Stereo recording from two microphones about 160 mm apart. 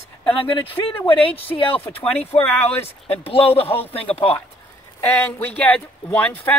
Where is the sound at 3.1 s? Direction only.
35° left (ahead or behind).